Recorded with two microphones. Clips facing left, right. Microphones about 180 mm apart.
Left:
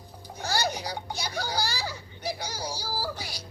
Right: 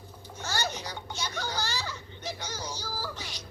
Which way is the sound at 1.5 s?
10° left (ahead or behind).